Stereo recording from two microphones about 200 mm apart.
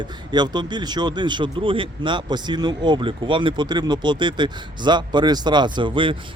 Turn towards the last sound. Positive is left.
turn(degrees=-25)  # may be behind; listen again after turning